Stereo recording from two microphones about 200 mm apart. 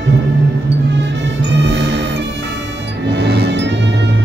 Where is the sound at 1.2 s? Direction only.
60° right (ahead or behind).